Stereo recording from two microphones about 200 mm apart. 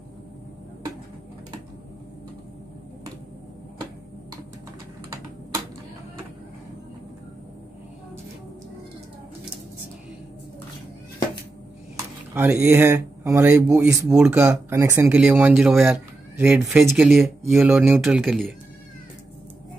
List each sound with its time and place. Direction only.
12.4 s speech: 10° right (ahead or behind)
18.2 s speech: centre (ahead or behind)